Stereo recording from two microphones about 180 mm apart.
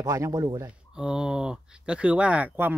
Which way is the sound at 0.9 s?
5° right (ahead or behind).